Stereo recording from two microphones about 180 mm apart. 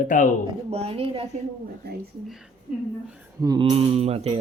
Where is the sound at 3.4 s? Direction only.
20° right (ahead or behind).